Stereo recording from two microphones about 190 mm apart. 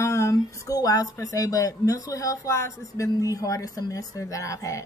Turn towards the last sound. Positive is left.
turn(degrees=15)  # may be behind; listen again after turning